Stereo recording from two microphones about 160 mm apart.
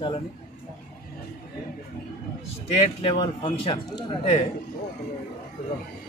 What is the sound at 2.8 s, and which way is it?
Speech, 35° left (ahead or behind).